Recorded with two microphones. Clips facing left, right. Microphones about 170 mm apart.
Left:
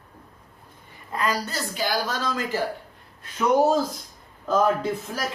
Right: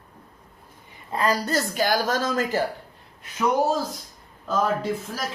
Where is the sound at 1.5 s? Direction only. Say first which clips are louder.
Right 4 dB; 50° right (ahead or behind).